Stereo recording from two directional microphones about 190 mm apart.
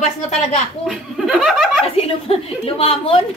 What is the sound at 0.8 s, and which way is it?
A woman's voice, centre (ahead or behind).